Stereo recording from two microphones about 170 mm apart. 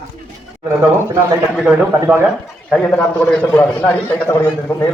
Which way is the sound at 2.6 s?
5° left (ahead or behind).